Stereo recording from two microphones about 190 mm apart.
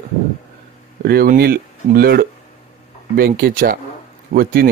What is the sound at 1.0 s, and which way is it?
A man's voice, 50° right (ahead or behind).